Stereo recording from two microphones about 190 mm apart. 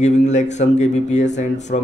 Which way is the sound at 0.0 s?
40° left (ahead or behind).